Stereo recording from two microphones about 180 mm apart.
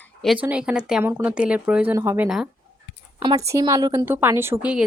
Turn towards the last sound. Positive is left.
turn(degrees=-5)  # may be behind; listen again after turning